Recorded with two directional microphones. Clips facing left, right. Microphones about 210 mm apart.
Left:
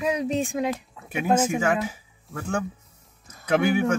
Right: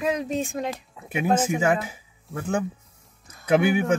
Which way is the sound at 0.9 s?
10° right (ahead or behind).